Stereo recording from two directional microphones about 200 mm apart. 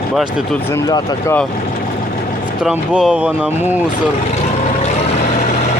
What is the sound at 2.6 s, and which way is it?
Speech, 5° right (ahead or behind).